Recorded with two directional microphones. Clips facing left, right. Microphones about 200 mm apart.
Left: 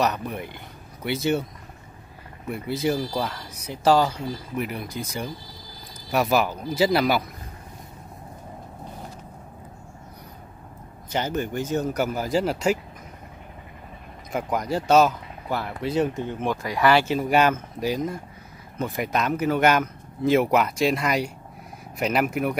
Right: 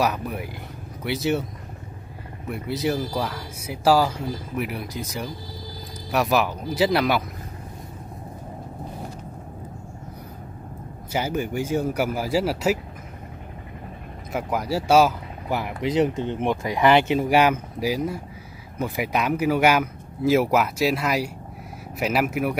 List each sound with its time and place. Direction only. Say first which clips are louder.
0.0 s speech: right 1 dB; 5° right (ahead or behind)
2.5 s speech: even; centre (ahead or behind)
11.1 s speech: right 1 dB; 10° right (ahead or behind)
14.3 s speech: even; 5° right (ahead or behind)